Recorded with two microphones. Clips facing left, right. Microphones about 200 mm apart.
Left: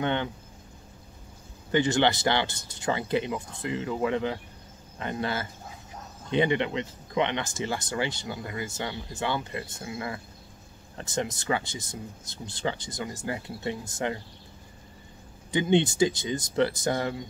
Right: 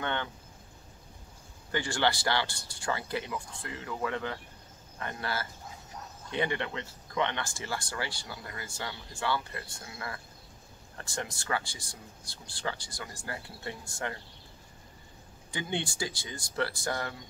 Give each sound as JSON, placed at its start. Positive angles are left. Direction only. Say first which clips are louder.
{"t": 0.0, "sound": "speech", "louder": "left 6 dB", "side_deg": 20}
{"t": 1.7, "sound": "speech", "louder": "left 7 dB", "side_deg": 20}
{"t": 15.5, "sound": "speech", "louder": "left 12 dB", "side_deg": 20}